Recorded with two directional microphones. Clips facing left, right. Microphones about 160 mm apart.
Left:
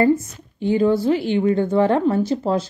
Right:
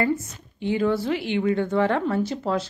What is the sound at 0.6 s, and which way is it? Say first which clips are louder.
A woman's voice: left 5 dB; 35° left (ahead or behind).